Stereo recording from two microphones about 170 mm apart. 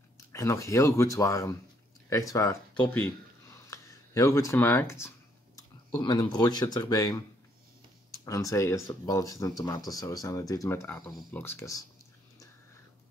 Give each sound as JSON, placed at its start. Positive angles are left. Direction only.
{"t": 0.3, "sound": "speech", "side_deg": 15}
{"t": 2.7, "sound": "a sound", "side_deg": 10}
{"t": 5.9, "sound": "speech", "side_deg": 25}
{"t": 8.3, "sound": "speech", "side_deg": 20}